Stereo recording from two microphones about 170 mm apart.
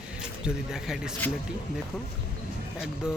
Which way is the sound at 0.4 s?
5° right (ahead or behind).